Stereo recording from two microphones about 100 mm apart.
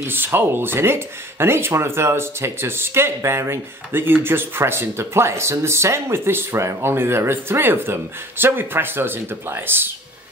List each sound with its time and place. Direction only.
0.0 s speech: 20° right (ahead or behind)